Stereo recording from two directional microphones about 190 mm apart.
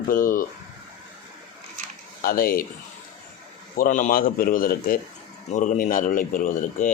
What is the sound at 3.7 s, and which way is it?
Speech, 45° left (ahead or behind).